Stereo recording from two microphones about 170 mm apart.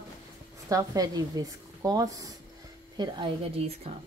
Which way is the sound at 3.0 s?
30° right (ahead or behind).